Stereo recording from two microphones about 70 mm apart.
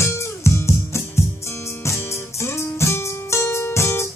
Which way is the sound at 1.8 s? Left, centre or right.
Left.